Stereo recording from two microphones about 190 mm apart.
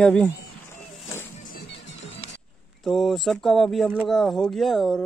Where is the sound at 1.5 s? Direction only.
65° left (ahead or behind).